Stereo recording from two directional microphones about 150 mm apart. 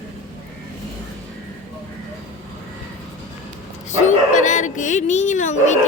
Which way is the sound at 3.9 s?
55° left (ahead or behind).